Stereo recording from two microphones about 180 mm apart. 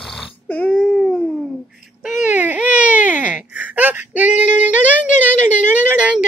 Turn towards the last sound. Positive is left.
turn(degrees=-10)  # may be behind; listen again after turning